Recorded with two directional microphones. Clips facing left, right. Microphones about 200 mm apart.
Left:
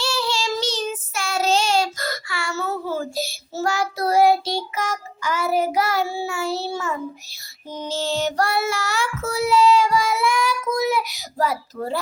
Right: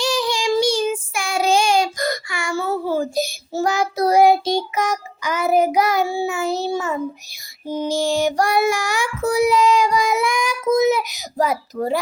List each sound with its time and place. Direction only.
0.0 s child singing: 15° right (ahead or behind)